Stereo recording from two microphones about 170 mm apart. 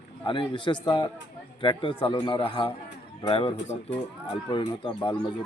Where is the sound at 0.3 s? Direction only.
30° left (ahead or behind).